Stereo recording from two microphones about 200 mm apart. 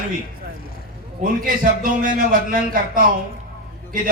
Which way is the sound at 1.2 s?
45° right (ahead or behind).